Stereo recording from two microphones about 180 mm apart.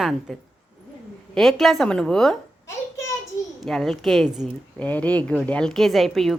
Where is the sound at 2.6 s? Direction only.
15° left (ahead or behind).